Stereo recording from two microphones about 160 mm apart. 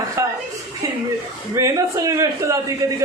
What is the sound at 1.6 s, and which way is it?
A man's voice, 20° right (ahead or behind).